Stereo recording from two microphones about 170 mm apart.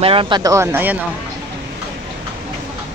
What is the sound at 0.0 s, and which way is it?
Speech, 30° right (ahead or behind).